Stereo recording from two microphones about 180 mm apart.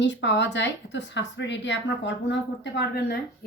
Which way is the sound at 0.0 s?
85° left.